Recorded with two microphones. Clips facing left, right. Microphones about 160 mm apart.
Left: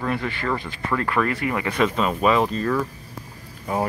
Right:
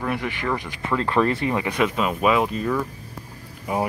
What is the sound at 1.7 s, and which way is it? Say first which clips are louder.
Speech: left 1 dB; 10° right (ahead or behind).